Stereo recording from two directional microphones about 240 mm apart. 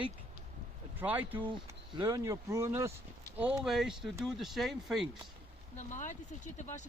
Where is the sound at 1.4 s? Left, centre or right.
Centre.